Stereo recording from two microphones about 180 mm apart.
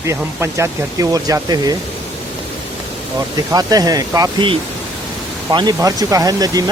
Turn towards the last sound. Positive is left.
turn(degrees=-20)  # may be behind; listen again after turning